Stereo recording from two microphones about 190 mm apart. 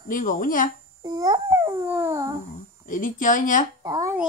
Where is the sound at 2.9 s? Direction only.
45° left (ahead or behind).